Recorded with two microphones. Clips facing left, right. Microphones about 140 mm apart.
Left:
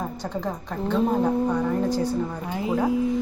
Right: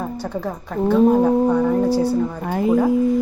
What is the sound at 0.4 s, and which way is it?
Speech, 10° right (ahead or behind).